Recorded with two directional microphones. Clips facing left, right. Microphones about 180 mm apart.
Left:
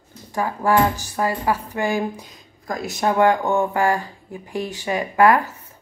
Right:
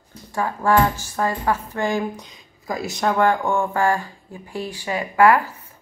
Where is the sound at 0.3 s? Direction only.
15° left (ahead or behind).